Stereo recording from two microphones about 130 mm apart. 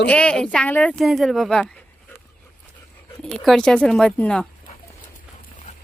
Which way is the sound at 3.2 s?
Centre (ahead or behind).